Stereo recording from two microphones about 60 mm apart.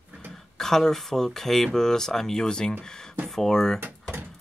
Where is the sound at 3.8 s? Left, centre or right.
Right.